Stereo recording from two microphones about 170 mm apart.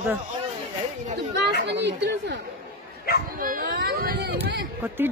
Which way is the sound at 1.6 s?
90° right.